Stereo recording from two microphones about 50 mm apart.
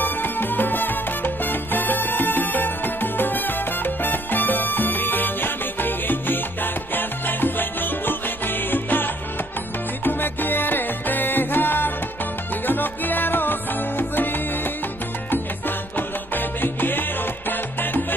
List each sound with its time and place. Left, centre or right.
0.0 s music: left
16.3 s music: left